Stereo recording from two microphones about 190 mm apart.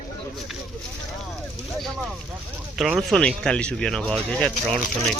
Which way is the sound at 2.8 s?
Centre (ahead or behind).